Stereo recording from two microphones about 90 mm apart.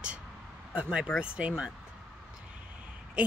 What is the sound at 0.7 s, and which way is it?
Speech, 15° right (ahead or behind).